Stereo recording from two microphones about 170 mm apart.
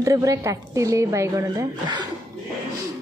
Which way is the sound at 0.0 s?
20° right (ahead or behind).